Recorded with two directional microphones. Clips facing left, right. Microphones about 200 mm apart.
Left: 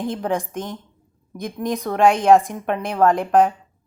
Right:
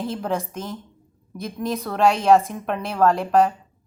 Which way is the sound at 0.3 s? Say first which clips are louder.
Left 2 dB; 15° left (ahead or behind).